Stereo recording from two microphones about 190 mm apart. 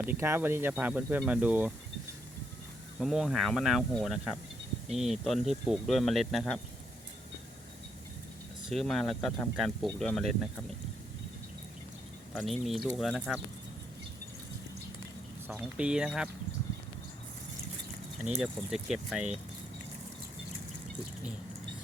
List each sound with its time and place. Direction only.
0.0 s speech: 10° right (ahead or behind)
3.0 s speech: centre (ahead or behind)
8.7 s speech: centre (ahead or behind)
12.3 s speech: centre (ahead or behind)
15.4 s speech: 10° right (ahead or behind)
18.4 s speech: centre (ahead or behind)